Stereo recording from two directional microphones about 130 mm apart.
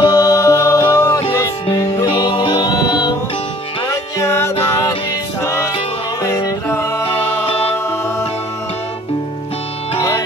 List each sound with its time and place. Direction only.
0.0 s music: 30° left (ahead or behind)
9.9 s music: 25° left (ahead or behind)